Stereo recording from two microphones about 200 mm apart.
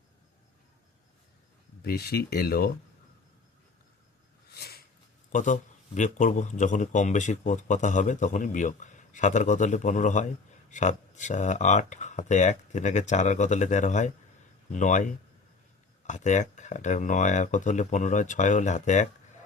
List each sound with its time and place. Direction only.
1.8 s speech: 50° left (ahead or behind)
4.5 s a sound: 55° left (ahead or behind)
5.3 s speech: 40° left (ahead or behind)